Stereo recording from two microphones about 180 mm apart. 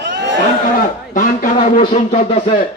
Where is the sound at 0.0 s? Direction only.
75° right (ahead or behind).